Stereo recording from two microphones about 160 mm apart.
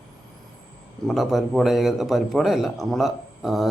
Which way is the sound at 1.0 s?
Centre (ahead or behind).